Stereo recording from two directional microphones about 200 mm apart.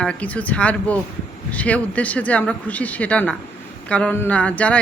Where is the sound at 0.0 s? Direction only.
5° left (ahead or behind).